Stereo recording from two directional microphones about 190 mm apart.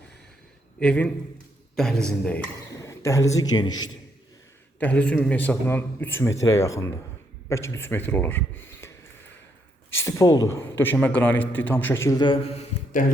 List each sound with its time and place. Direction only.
0.8 s a man's voice: 5° left (ahead or behind)
2.8 s a man's voice: 15° left (ahead or behind)
4.8 s a man's voice: 5° left (ahead or behind)
9.9 s a man's voice: 15° left (ahead or behind); by 13.1 s 40° left (ahead or behind)